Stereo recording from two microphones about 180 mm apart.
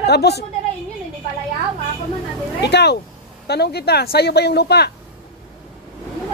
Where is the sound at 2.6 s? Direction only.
70° left (ahead or behind).